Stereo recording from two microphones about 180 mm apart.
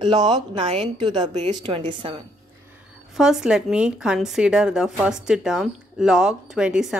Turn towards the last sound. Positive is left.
turn(degrees=-5)  # may be behind; listen again after turning